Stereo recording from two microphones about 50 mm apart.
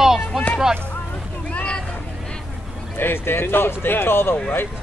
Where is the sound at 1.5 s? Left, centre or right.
Centre.